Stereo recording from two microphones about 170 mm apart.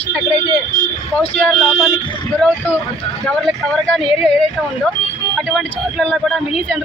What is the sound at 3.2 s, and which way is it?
Speech, centre (ahead or behind).